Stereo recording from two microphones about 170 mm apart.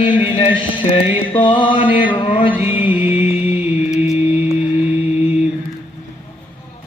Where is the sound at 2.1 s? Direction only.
30° left (ahead or behind).